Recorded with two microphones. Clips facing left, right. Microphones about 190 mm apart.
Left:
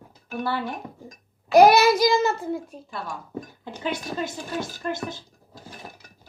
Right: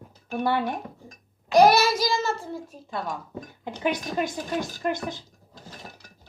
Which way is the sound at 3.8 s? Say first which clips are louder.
Right 2 dB; 15° right (ahead or behind).